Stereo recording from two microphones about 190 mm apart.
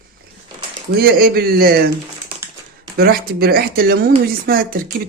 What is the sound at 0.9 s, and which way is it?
Speech, 55° right (ahead or behind).